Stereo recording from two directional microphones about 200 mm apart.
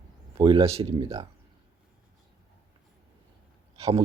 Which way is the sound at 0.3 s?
25° right (ahead or behind).